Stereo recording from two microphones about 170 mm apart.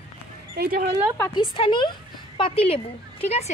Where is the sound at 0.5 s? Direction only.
60° right (ahead or behind).